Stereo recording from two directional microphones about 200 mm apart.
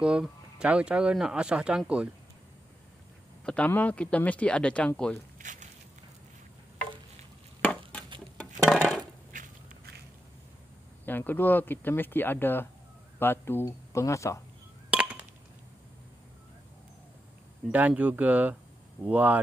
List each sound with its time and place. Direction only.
0.0 s speech: 5° right (ahead or behind)
3.4 s speech: 5° left (ahead or behind)
5.4 s walk: 40° right (ahead or behind)
8.4 s a sound: centre (ahead or behind)
9.3 s walk: 40° right (ahead or behind)
11.1 s speech: 10° left (ahead or behind)
14.9 s chop: 5° right (ahead or behind)
17.6 s speech: 5° right (ahead or behind)